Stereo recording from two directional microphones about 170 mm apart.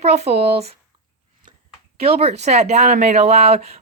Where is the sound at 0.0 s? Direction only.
40° right (ahead or behind).